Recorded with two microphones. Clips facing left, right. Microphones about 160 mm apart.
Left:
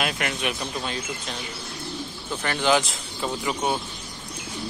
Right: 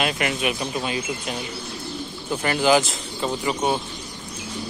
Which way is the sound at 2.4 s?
5° right (ahead or behind).